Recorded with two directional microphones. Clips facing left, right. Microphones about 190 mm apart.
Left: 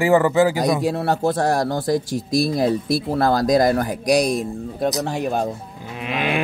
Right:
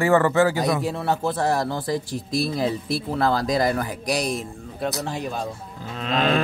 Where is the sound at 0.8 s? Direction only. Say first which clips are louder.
Left 4 dB; 40° left (ahead or behind).